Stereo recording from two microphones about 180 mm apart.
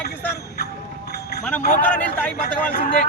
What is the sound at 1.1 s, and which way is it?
Clip-clop, 65° left (ahead or behind).